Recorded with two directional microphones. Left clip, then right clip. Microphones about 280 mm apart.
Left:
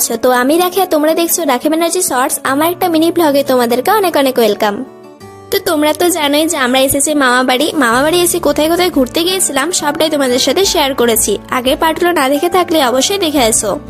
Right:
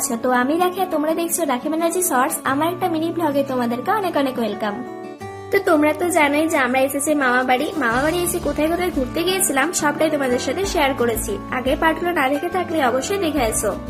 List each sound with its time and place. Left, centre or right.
0.2 s a woman's voice: left